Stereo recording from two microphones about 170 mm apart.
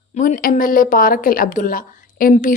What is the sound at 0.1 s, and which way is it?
Speech, 50° left (ahead or behind).